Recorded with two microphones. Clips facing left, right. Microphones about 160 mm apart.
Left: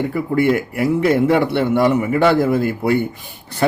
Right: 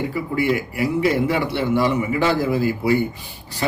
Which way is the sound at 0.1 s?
55° left (ahead or behind).